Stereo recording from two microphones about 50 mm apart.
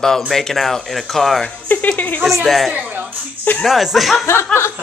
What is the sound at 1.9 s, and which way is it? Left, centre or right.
Speech, left.